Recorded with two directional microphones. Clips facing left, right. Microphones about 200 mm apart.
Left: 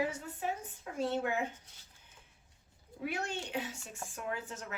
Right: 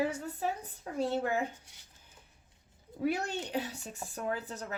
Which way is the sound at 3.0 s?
40° right (ahead or behind).